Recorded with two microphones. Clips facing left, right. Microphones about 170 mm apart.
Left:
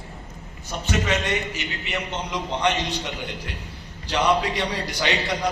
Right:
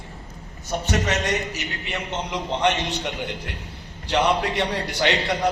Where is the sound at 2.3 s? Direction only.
60° right (ahead or behind).